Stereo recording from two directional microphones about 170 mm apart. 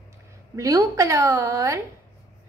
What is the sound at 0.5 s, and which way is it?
A woman's voice, 20° right (ahead or behind).